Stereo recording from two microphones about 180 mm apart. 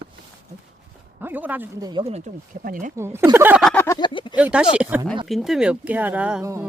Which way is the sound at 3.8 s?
25° left (ahead or behind).